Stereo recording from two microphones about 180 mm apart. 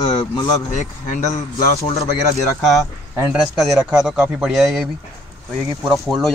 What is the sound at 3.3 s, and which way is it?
A man's voice, centre (ahead or behind).